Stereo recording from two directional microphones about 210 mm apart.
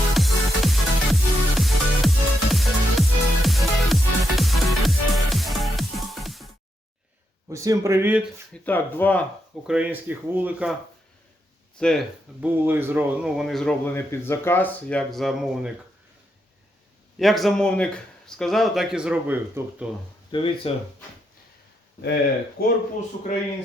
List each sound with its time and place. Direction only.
0.1 s music: centre (ahead or behind)
7.5 s speech: 15° right (ahead or behind)
8.5 s speech: 10° left (ahead or behind)
9.6 s speech: 5° right (ahead or behind)
11.8 s speech: centre (ahead or behind)
12.6 s speech: 10° right (ahead or behind)
17.2 s speech: centre (ahead or behind)
20.3 s speech: 25° left (ahead or behind)
22.6 s speech: 45° left (ahead or behind)